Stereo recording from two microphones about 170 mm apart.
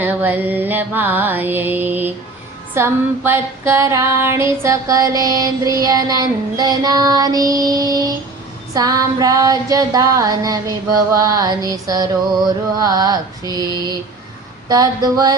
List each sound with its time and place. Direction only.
0.0 s music: 10° right (ahead or behind)
2.7 s female singing: 15° right (ahead or behind)